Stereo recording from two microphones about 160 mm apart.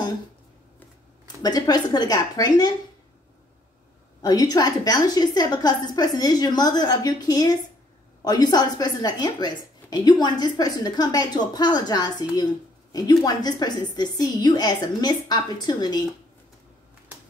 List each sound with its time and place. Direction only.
1.2 s a woman's voice: 25° left (ahead or behind)
4.2 s a woman's voice: 25° left (ahead or behind)